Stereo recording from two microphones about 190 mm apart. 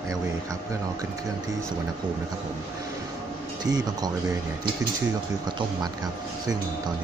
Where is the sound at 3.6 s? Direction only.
20° right (ahead or behind).